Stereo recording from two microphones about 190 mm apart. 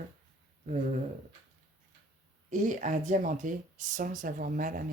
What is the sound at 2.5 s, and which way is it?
Speech, 40° right (ahead or behind).